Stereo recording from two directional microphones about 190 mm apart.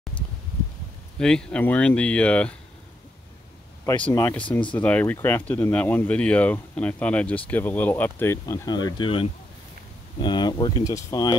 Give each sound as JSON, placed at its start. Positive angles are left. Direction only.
{"t": 1.2, "sound": "speech", "side_deg": 5}
{"t": 3.8, "sound": "speech", "side_deg": 15}